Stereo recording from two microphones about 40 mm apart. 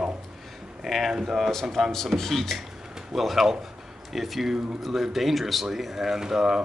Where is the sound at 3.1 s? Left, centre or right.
Centre.